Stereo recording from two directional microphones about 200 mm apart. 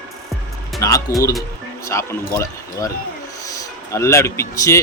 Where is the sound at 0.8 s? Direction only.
15° left (ahead or behind).